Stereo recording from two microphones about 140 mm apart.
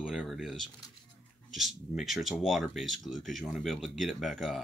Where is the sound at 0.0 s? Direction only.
Centre (ahead or behind).